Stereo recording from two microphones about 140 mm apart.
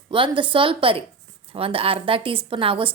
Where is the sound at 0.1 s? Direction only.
35° right (ahead or behind).